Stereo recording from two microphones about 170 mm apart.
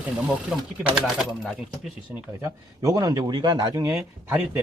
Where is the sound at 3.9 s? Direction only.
10° right (ahead or behind).